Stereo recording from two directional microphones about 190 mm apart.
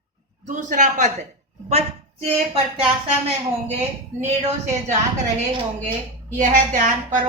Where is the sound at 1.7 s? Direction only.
35° right (ahead or behind).